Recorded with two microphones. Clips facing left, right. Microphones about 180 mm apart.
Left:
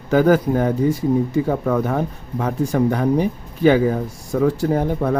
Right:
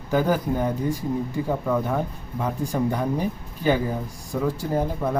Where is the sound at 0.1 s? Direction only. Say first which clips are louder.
Left 7 dB; 75° left (ahead or behind).